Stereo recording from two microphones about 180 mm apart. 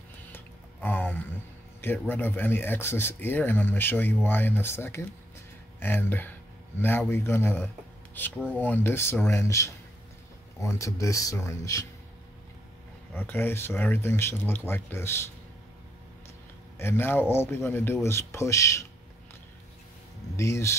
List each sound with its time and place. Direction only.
0.8 s a sound: 10° left (ahead or behind)
1.8 s speech: 10° left (ahead or behind)
13.1 s speech: 10° left (ahead or behind)
16.7 s speech: 15° left (ahead or behind)
20.3 s speech: 15° left (ahead or behind)